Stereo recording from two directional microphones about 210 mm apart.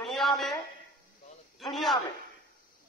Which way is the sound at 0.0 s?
Centre (ahead or behind).